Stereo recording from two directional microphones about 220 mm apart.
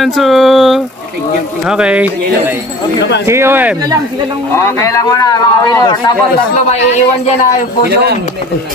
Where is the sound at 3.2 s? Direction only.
10° right (ahead or behind).